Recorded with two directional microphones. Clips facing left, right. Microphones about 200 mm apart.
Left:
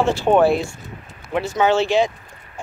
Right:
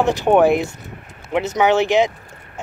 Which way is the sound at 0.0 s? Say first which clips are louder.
Right 1 dB; 15° right (ahead or behind).